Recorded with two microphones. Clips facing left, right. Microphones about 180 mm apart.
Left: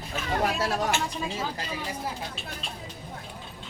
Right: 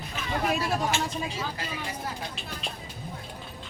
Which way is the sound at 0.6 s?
75° left (ahead or behind).